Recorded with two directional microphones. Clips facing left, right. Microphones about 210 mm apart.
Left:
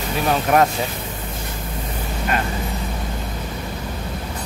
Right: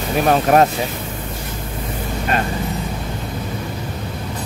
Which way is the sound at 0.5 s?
35° right (ahead or behind).